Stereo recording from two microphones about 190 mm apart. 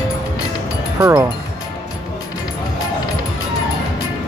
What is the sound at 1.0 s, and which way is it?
Speech, 20° right (ahead or behind).